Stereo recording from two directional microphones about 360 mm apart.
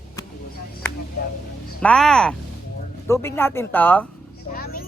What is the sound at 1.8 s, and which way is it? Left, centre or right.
Speech, centre.